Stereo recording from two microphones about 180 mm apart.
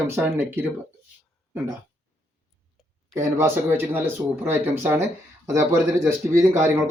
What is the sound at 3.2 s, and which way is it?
Speech, 15° right (ahead or behind).